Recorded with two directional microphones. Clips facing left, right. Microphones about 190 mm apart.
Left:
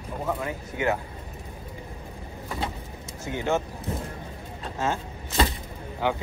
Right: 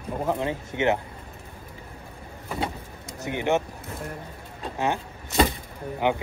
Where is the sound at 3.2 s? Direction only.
20° right (ahead or behind).